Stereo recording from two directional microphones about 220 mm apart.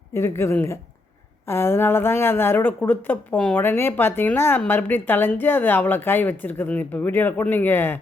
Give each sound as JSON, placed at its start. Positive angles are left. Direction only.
{"t": 0.1, "sound": "speech", "side_deg": 10}